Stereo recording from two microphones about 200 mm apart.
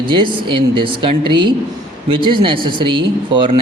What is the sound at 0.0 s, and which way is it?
Speech, 25° right (ahead or behind).